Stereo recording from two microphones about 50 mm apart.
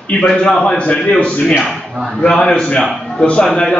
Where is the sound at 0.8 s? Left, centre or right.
Left.